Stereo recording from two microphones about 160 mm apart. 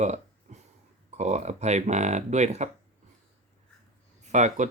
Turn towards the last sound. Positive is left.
turn(degrees=-50)  # may be behind; listen again after turning